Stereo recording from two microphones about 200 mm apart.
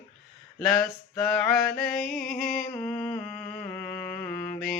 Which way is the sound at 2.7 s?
10° left (ahead or behind).